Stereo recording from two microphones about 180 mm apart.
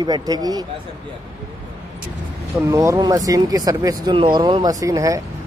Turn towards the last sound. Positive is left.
turn(degrees=-20)  # may be behind; listen again after turning